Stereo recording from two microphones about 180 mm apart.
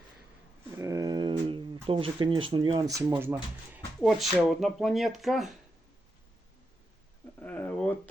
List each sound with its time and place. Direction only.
0.8 s speech: 20° right (ahead or behind)
4.0 s speech: centre (ahead or behind)
7.3 s a sound: 10° left (ahead or behind)